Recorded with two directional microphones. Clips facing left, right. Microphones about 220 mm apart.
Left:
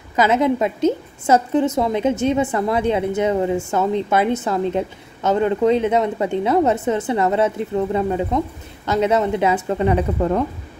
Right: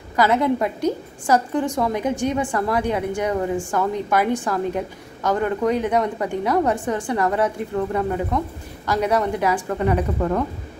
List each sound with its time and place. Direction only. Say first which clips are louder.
0.1 s a woman's voice: left 2 dB; 20° left (ahead or behind)